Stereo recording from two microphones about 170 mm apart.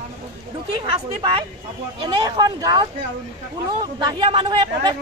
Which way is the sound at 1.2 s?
35° right (ahead or behind).